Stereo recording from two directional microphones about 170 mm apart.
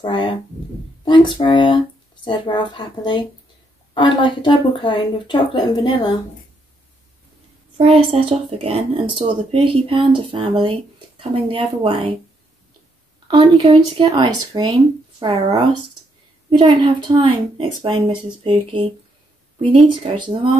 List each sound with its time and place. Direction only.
0.0 s speech: 30° left (ahead or behind)
7.7 s speech: 35° right (ahead or behind)
13.3 s speech: 30° right (ahead or behind)
19.9 s speech: 30° right (ahead or behind)